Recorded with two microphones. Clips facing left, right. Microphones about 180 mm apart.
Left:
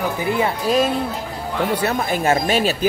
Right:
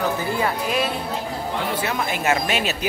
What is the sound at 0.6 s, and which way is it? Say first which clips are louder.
Speech: left 6 dB; 40° left (ahead or behind).